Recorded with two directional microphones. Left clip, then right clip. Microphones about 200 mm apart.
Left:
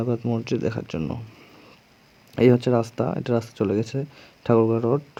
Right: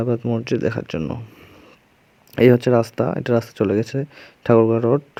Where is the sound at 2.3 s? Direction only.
15° right (ahead or behind).